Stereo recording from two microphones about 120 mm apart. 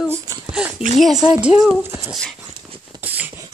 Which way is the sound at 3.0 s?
15° right (ahead or behind).